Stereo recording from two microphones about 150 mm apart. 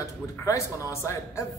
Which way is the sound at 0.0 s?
20° left (ahead or behind).